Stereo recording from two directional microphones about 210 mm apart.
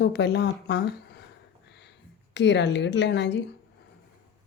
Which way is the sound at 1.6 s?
55° left (ahead or behind).